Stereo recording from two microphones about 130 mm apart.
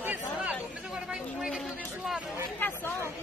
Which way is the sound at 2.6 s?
15° left (ahead or behind).